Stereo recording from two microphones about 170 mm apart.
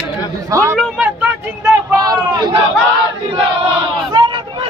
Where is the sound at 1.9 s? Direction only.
20° right (ahead or behind).